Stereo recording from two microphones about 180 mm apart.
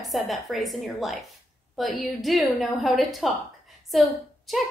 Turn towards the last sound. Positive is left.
turn(degrees=0)  # may be behind; listen again after turning